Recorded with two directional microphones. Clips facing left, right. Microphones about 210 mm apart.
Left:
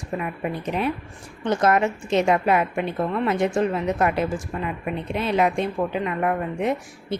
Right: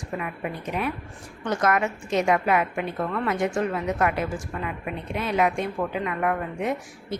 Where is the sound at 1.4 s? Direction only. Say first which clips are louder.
Left 4 dB; 25° left (ahead or behind).